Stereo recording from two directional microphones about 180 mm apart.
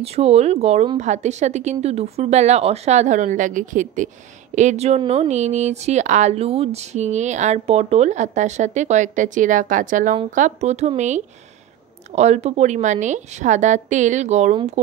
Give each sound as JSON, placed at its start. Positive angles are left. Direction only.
{"t": 0.0, "sound": "speech", "side_deg": -35}